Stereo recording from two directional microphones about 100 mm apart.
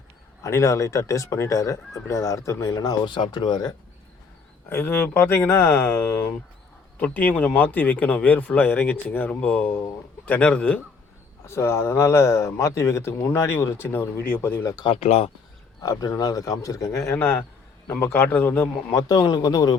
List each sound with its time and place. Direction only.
0.4 s speech: 30° left (ahead or behind)
4.7 s speech: 20° left (ahead or behind)
11.4 s speech: 25° left (ahead or behind)
14.6 s speech: 35° left (ahead or behind)
14.8 s speech: 90° left
15.8 s speech: 35° left (ahead or behind)
19.0 s speech: 35° left (ahead or behind)